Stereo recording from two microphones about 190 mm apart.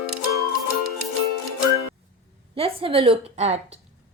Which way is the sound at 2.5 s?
30° right (ahead or behind).